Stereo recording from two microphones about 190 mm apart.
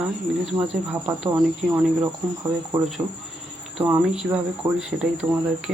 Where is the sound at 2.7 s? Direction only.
20° right (ahead or behind).